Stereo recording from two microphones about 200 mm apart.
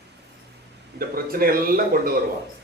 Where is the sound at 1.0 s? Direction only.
45° right (ahead or behind).